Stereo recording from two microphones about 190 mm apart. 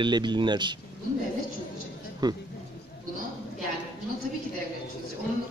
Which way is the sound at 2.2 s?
20° right (ahead or behind).